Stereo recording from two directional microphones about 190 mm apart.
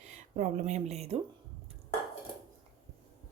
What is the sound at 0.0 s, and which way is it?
Speech, 40° right (ahead or behind).